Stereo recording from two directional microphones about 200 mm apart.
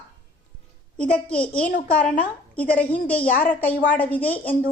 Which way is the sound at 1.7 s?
40° left (ahead or behind).